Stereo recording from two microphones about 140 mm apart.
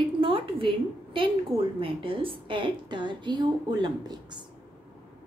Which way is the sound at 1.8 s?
40° right (ahead or behind).